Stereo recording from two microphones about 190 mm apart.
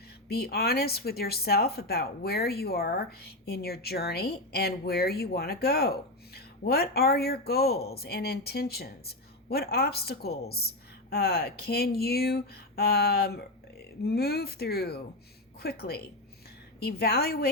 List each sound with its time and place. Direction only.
0.3 s speech: 55° left (ahead or behind)